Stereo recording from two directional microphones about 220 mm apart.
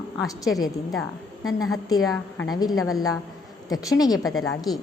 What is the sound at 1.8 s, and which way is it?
Speech, 15° left (ahead or behind).